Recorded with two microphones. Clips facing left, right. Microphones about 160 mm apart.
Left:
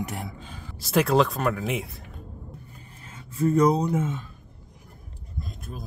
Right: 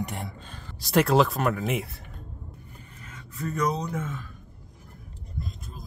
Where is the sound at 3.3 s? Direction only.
30° left (ahead or behind).